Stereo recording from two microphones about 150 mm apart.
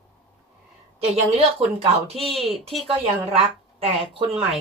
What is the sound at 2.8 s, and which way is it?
A woman's voice, 40° right (ahead or behind).